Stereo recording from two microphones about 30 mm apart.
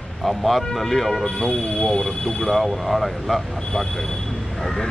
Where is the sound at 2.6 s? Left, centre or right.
Centre.